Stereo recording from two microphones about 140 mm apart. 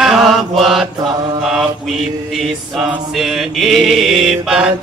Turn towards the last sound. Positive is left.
turn(degrees=-5)  # may be behind; listen again after turning